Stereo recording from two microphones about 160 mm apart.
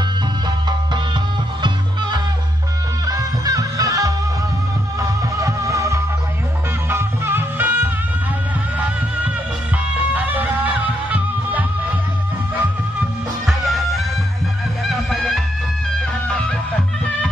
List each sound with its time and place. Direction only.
1.6 s music: 30° right (ahead or behind); by 11.6 s 10° right (ahead or behind)
13.5 s music: centre (ahead or behind)